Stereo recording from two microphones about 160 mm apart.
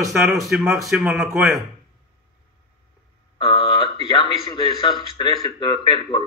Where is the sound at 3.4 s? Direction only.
30° left (ahead or behind).